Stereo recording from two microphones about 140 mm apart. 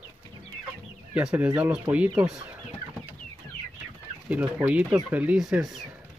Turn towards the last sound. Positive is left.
turn(degrees=-5)  # may be behind; listen again after turning